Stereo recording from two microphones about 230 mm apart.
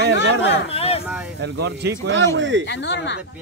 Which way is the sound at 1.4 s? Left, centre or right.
Right.